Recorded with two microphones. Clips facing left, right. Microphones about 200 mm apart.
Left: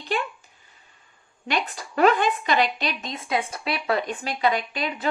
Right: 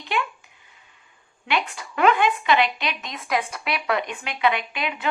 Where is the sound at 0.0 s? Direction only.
40° left (ahead or behind).